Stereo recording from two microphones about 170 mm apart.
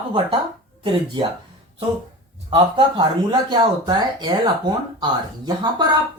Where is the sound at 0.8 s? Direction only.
30° right (ahead or behind).